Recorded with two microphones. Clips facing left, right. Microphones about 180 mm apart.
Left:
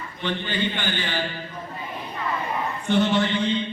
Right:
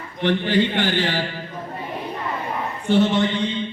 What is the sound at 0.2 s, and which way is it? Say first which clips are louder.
A man's voice: right 8 dB; 80° right.